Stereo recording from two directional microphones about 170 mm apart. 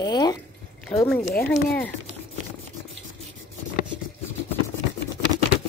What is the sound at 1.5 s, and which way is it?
Speech, 5° left (ahead or behind).